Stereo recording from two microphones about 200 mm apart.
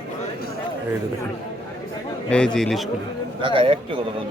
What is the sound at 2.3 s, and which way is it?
Speech, 5° left (ahead or behind).